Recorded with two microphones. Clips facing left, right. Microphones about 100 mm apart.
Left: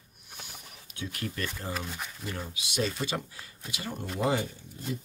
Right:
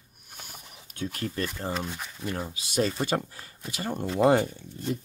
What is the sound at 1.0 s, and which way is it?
Speech, 40° right (ahead or behind).